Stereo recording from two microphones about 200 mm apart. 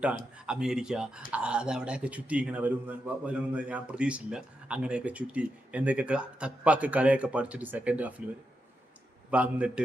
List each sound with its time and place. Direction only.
0.3 s a man's voice: 5° right (ahead or behind)
9.3 s a man's voice: 5° right (ahead or behind)